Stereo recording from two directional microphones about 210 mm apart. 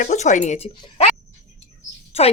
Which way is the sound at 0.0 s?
35° left (ahead or behind).